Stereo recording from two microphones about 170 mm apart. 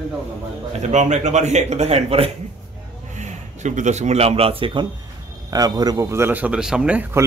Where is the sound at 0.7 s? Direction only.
45° right (ahead or behind).